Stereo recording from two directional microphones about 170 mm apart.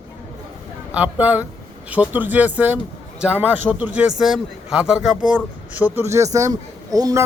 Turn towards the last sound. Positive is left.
turn(degrees=-20)  # may be behind; listen again after turning